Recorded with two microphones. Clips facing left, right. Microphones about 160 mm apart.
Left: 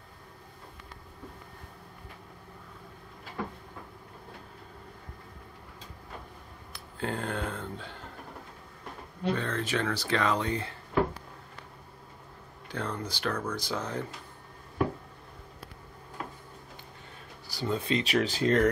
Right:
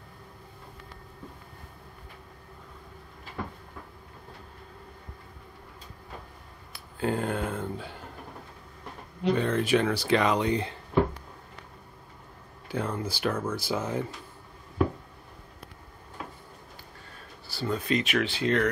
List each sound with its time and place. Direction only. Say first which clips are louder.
6.7 s speech: right 5 dB; centre (ahead or behind)
9.2 s speech: right 5 dB; 15° right (ahead or behind)
12.6 s speech: right 4 dB; 5° right (ahead or behind)
17.5 s speech: right 1 dB; 20° left (ahead or behind); by 18.7 s 40° left (ahead or behind)